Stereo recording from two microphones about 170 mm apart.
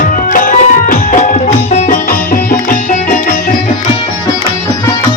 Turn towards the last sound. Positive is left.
turn(degrees=50)  # may be behind; listen again after turning